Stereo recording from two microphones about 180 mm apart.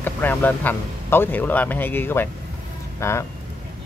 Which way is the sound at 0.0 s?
10° left (ahead or behind).